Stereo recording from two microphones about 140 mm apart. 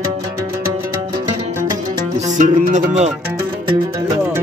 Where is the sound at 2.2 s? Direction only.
60° right (ahead or behind).